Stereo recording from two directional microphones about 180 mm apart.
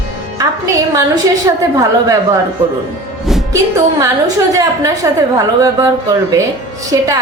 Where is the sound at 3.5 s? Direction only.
15° right (ahead or behind).